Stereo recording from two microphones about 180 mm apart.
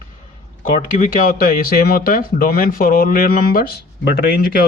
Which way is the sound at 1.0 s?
50° left (ahead or behind).